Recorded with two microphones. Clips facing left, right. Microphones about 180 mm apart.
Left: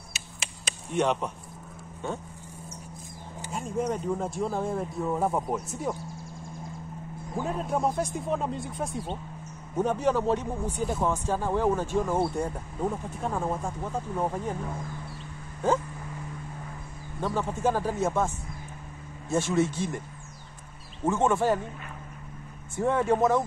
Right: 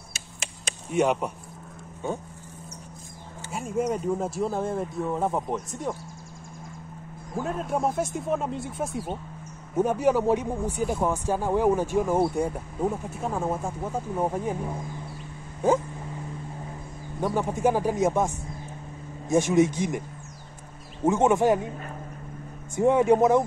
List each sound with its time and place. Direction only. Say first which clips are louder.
0.9 s speech: right 3 dB; 10° right (ahead or behind)
3.5 s speech: right 2 dB; 10° right (ahead or behind)
7.3 s speech: right 1 dB; centre (ahead or behind)
17.2 s speech: right 3 dB; 15° right (ahead or behind)
21.0 s speech: right 4 dB; 20° right (ahead or behind)
22.8 s speech: right 5 dB; 15° right (ahead or behind)